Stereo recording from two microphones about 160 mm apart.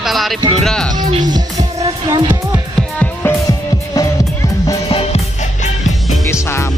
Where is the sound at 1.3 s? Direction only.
25° right (ahead or behind).